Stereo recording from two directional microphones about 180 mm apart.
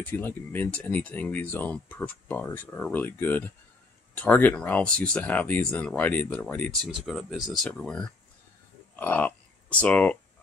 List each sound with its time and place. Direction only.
0.0 s speech: 10° left (ahead or behind)